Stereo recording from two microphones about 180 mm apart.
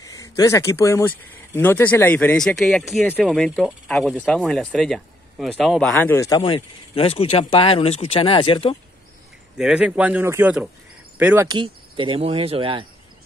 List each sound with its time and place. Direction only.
0.0 s speech: 20° left (ahead or behind)
9.6 s speech: 5° right (ahead or behind)
11.4 s speech: 25° right (ahead or behind)